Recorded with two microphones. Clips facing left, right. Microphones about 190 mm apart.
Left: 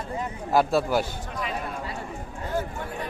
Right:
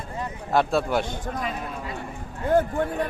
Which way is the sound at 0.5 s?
Centre (ahead or behind).